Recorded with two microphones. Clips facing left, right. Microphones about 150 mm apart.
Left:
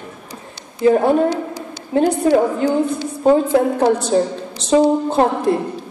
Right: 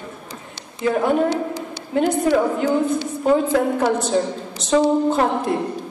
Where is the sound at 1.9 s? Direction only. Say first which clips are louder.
Left 3 dB; 35° left (ahead or behind).